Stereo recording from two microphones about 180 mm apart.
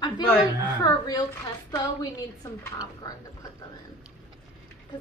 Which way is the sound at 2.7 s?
20° left (ahead or behind).